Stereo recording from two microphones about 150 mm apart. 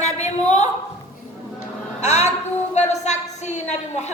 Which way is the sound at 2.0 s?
50° left (ahead or behind).